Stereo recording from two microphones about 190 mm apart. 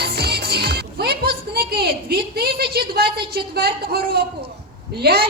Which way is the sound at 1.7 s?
55° right (ahead or behind).